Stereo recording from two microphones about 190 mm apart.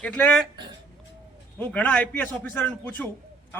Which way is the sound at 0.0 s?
5° left (ahead or behind).